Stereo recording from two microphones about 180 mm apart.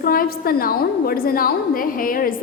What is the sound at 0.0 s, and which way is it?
A woman's voice, 55° left (ahead or behind).